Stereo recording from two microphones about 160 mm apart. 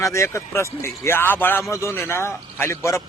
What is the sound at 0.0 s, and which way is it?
A man's voice, 20° left (ahead or behind).